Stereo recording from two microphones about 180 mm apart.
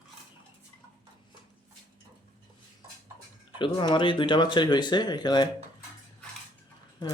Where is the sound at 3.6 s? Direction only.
25° left (ahead or behind).